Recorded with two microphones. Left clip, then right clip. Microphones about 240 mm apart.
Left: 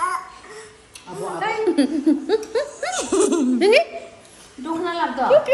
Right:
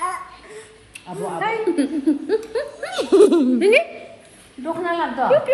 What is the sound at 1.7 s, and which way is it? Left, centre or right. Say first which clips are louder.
Speech: left 1 dB; left.